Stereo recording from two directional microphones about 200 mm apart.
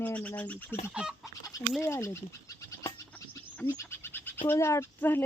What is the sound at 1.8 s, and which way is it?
Speech, 15° left (ahead or behind).